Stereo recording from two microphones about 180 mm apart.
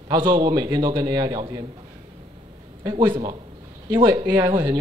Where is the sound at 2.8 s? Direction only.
25° right (ahead or behind).